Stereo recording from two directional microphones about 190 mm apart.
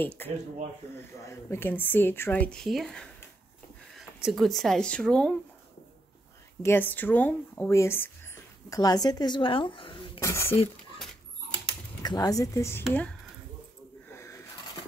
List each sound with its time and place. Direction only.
0.0 s speech: 10° left (ahead or behind)
6.6 s speech: 10° left (ahead or behind); by 10.2 s 25° left (ahead or behind)
10.2 s speech: 15° left (ahead or behind)
12.0 s speech: 20° left (ahead or behind)
14.1 s a sound: 15° left (ahead or behind)